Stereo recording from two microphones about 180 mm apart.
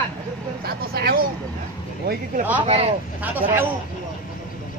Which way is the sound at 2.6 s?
35° right (ahead or behind).